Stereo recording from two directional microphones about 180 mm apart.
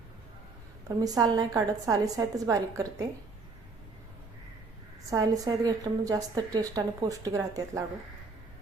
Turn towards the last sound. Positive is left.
turn(degrees=-20)  # may be behind; listen again after turning